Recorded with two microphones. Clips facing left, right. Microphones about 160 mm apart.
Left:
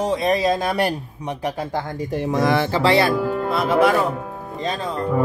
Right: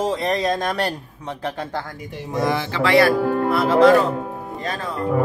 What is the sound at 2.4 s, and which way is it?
Speech, 80° left.